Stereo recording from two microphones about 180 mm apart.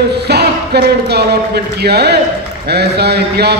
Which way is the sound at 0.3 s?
65° right (ahead or behind).